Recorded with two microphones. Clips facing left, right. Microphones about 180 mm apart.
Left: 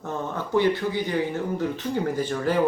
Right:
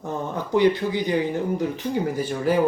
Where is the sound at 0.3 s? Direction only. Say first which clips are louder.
Right 3 dB; 15° right (ahead or behind).